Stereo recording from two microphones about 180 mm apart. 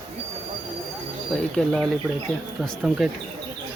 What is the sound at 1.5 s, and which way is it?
Speech, 5° left (ahead or behind).